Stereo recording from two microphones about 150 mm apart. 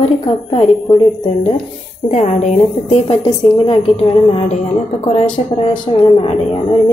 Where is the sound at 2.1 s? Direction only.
50° left (ahead or behind).